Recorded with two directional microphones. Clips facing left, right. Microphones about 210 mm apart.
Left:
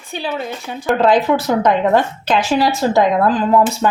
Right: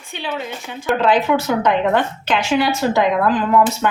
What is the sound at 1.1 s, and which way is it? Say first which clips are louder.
A woman's voice: left 1 dB; 35° left (ahead or behind).